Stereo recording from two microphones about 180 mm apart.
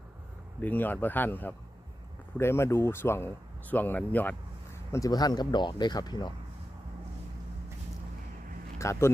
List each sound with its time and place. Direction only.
0.6 s speech: 10° left (ahead or behind)
8.8 s speech: 15° left (ahead or behind)